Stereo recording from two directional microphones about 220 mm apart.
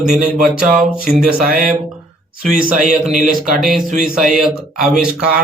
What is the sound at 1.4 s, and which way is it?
Speech, 40° right (ahead or behind).